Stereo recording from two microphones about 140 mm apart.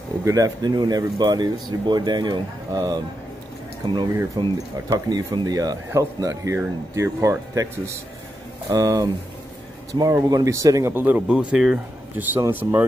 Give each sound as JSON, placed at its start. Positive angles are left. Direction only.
{"t": 0.2, "sound": "speech", "side_deg": -25}
{"t": 4.4, "sound": "speech", "side_deg": -30}